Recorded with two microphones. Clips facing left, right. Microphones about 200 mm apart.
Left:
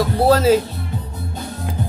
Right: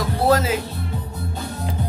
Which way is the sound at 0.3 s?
30° left (ahead or behind).